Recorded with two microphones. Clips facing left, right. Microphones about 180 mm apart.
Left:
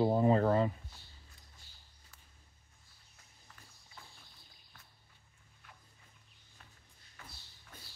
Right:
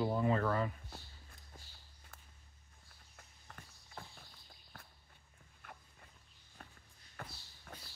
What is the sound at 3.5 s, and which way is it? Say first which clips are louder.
Horse: right 4 dB; 55° right (ahead or behind).